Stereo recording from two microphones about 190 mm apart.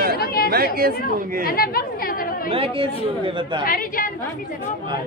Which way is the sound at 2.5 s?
30° right (ahead or behind).